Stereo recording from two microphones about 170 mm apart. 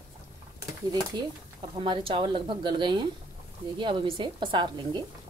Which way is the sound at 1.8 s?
30° right (ahead or behind).